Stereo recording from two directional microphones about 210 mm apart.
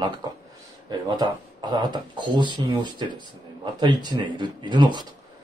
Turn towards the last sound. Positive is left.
turn(degrees=-20)  # may be behind; listen again after turning